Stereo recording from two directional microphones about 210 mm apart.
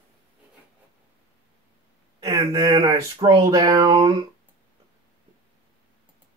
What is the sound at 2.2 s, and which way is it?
Speech, 15° right (ahead or behind).